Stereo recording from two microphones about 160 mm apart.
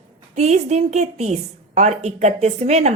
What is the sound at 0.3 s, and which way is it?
A woman's voice, 45° right (ahead or behind).